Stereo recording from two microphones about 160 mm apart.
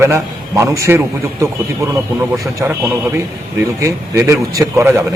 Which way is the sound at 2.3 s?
20° right (ahead or behind).